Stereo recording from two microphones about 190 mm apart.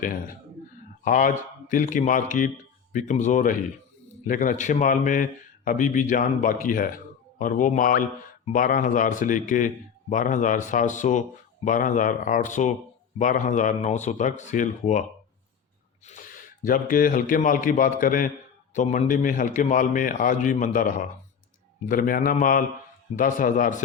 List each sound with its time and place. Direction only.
1.0 s a man's voice: 45° left (ahead or behind)
16.0 s a man's voice: 45° left (ahead or behind)